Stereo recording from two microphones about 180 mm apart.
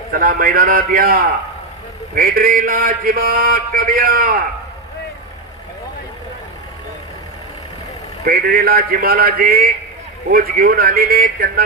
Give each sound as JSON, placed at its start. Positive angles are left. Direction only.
{"t": 0.1, "sound": "a man's voice", "side_deg": -50}
{"t": 8.2, "sound": "a man's voice", "side_deg": -55}